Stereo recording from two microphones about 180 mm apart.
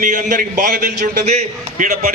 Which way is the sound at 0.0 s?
45° right (ahead or behind).